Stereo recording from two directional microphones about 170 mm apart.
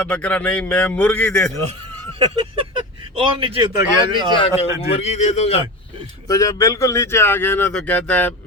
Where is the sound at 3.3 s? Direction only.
35° right (ahead or behind).